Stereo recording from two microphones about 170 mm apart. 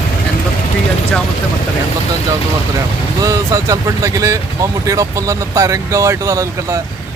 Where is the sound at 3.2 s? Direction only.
20° right (ahead or behind).